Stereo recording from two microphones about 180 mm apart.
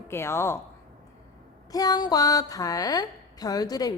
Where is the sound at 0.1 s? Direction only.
15° left (ahead or behind).